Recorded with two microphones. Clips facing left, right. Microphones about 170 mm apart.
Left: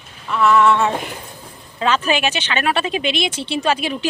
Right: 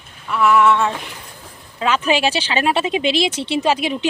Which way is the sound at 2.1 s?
30° right (ahead or behind).